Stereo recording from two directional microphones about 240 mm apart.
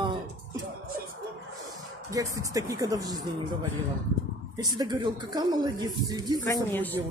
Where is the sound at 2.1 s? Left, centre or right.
Centre.